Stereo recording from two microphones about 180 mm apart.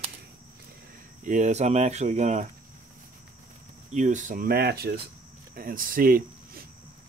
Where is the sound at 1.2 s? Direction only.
45° right (ahead or behind).